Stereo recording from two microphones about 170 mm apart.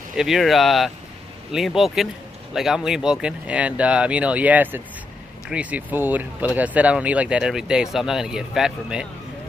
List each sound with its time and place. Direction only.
0.1 s speech: centre (ahead or behind)